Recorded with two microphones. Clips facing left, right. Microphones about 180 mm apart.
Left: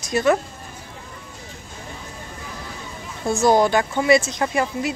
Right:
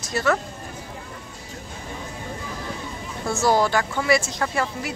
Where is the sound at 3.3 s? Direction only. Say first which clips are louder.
Left 4 dB; 20° left (ahead or behind).